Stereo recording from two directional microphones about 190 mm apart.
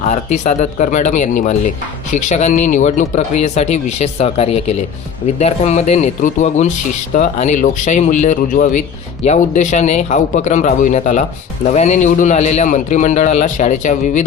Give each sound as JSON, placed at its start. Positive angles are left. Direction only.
{"t": 0.0, "sound": "speech", "side_deg": 40}